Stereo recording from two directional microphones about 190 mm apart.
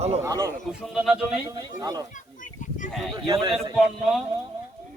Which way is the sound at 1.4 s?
20° right (ahead or behind).